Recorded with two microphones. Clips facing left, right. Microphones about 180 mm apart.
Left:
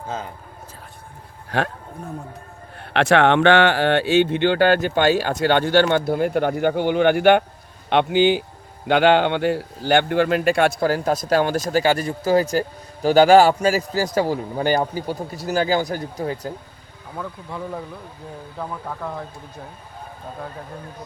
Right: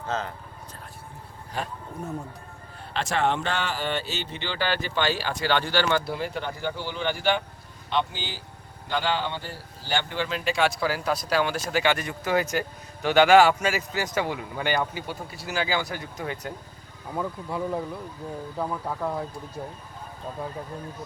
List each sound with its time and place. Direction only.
1.5 s speech: 75° left (ahead or behind)
2.9 s a man's voice: 70° left (ahead or behind); by 16.5 s 35° left (ahead or behind)
17.2 s speech: 5° right (ahead or behind)